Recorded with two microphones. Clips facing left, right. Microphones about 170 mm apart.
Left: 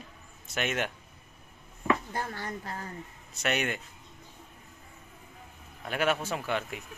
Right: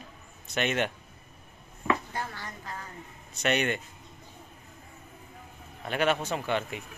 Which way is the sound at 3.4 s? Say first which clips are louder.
Right 3 dB; 5° left (ahead or behind).